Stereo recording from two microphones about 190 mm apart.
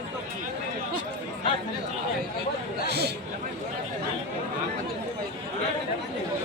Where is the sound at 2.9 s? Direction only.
60° right (ahead or behind).